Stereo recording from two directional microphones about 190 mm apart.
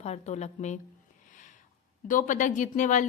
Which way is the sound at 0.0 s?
35° left (ahead or behind).